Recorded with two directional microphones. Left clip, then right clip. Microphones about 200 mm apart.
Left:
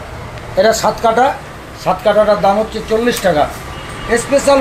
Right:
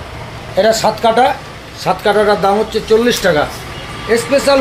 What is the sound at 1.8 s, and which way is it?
Speech, 45° right (ahead or behind).